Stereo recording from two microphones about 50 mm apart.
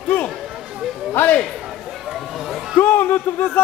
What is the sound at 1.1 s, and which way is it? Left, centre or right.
Speech, left.